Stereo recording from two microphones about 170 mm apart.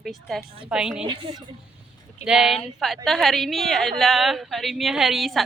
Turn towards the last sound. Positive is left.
turn(degrees=0)  # may be behind; listen again after turning